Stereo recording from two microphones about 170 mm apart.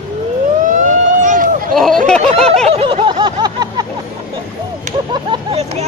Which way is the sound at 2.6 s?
35° right (ahead or behind).